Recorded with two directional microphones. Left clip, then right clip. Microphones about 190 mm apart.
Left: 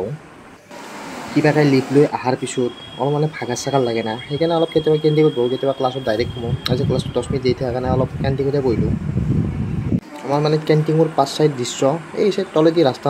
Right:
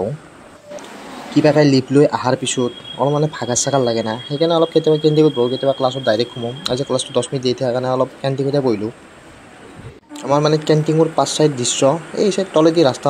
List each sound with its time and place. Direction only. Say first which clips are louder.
1.3 s speech: right 3 dB; 20° right (ahead or behind)
10.2 s speech: right 3 dB; 20° right (ahead or behind)